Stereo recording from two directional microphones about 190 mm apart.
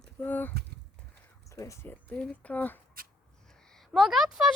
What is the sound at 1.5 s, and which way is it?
A woman's voice, 15° left (ahead or behind).